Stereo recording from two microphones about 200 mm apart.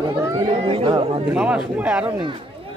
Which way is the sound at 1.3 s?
5° right (ahead or behind).